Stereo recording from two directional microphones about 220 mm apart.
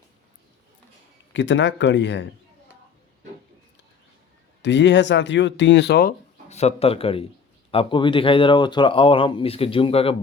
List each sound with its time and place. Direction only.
1.3 s speech: 55° left (ahead or behind)
4.6 s speech: 55° left (ahead or behind)
6.5 s speech: 30° left (ahead or behind)